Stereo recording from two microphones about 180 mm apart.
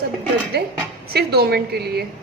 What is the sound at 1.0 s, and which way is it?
A woman's voice, 60° right (ahead or behind).